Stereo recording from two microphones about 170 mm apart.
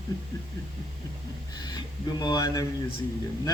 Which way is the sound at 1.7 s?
25° left (ahead or behind).